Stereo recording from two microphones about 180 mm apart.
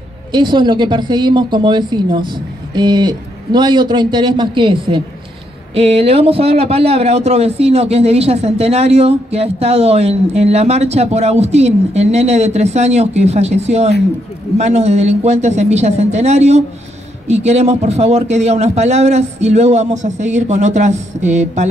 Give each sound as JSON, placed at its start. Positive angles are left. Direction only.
{"t": 0.3, "sound": "a man's voice", "side_deg": -25}